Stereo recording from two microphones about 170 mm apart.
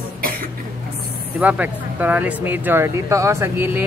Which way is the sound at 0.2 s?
60° right (ahead or behind).